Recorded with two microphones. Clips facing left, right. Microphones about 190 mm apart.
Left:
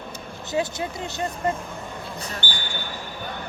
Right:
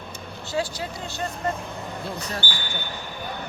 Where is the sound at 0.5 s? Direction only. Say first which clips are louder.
Left 2 dB; 20° left (ahead or behind).